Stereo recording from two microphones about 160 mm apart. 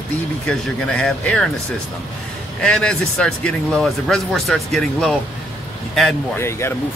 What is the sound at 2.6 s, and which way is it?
Speech, 5° left (ahead or behind).